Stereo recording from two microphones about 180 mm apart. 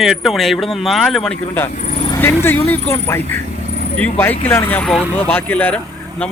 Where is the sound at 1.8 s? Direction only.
40° left (ahead or behind).